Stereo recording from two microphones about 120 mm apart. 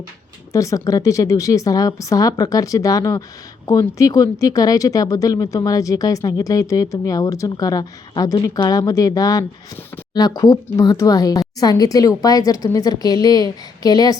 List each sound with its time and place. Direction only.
0.5 s speech: 25° left (ahead or behind)